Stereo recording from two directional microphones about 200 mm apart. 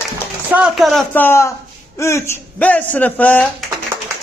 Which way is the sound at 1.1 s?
10° left (ahead or behind).